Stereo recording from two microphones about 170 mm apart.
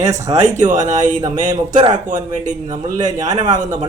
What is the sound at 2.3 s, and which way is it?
Speech, 50° right (ahead or behind).